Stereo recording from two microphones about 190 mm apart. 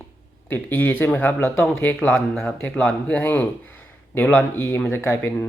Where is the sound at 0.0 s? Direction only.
10° left (ahead or behind).